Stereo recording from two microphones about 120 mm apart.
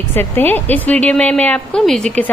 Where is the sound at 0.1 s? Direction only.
15° left (ahead or behind).